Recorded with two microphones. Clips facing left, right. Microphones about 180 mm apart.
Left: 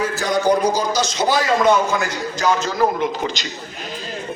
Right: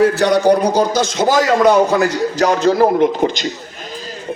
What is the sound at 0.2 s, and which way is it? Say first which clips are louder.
A man's voice: right 5 dB; 65° right (ahead or behind).